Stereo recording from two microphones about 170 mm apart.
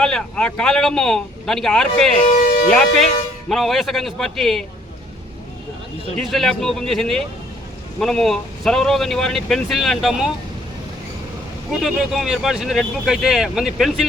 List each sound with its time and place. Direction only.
0.0 s speech: 5° left (ahead or behind)
2.2 s speech: 50° left (ahead or behind)
2.7 s speech: centre (ahead or behind)
6.1 s speech: centre (ahead or behind)
11.8 s speech: centre (ahead or behind)